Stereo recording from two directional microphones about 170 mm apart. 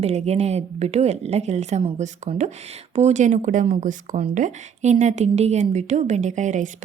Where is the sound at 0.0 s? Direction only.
40° right (ahead or behind).